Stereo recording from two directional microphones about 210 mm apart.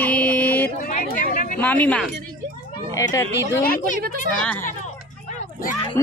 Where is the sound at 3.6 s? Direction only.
45° left (ahead or behind).